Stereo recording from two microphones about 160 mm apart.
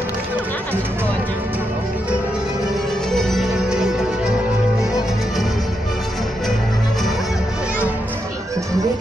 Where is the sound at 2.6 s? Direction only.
Centre (ahead or behind).